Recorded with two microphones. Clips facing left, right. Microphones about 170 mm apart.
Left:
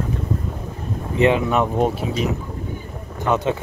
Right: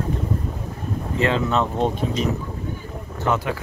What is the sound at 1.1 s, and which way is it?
Speech, 15° left (ahead or behind).